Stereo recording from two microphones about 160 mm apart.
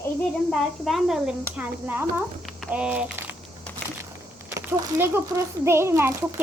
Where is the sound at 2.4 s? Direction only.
5° right (ahead or behind).